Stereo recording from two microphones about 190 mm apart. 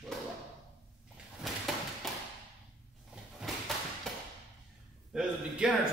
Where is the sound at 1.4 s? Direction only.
Centre (ahead or behind).